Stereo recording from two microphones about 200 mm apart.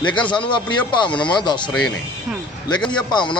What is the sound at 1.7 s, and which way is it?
A man's voice, 5° left (ahead or behind).